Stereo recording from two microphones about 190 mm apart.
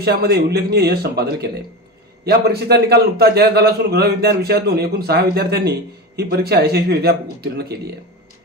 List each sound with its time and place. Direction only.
0.0 s a man's voice: 55° right (ahead or behind)